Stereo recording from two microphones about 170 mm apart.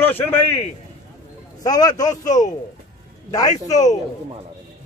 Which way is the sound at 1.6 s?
20° left (ahead or behind).